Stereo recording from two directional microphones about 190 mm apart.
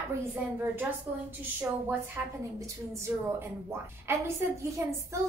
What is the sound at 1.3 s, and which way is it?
A woman's voice, 10° right (ahead or behind).